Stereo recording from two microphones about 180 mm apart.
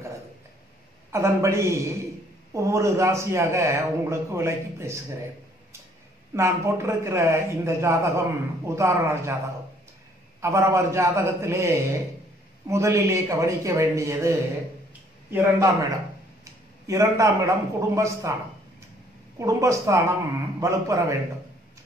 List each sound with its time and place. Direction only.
1.1 s a man's voice: 15° right (ahead or behind)
6.3 s a man's voice: 15° right (ahead or behind)
10.4 s a man's voice: 15° right (ahead or behind)
15.3 s a man's voice: 15° right (ahead or behind)
19.3 s a man's voice: 15° right (ahead or behind)